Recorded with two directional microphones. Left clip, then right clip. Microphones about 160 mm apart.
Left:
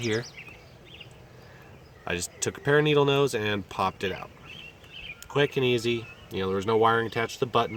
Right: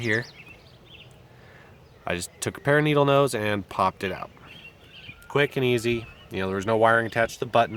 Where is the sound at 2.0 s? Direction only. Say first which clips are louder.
Right 1 dB; 35° right (ahead or behind).